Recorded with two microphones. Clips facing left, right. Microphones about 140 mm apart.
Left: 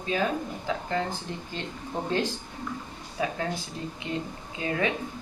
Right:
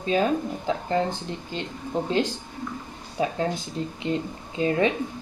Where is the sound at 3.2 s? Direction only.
30° right (ahead or behind).